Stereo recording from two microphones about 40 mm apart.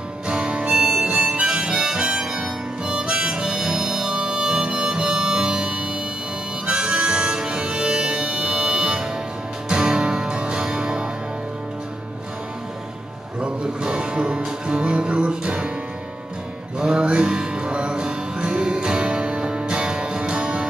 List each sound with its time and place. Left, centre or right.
0.3 s music: right
0.7 s harmonica: centre
9.7 s music: right
13.4 s music: right
16.7 s music: right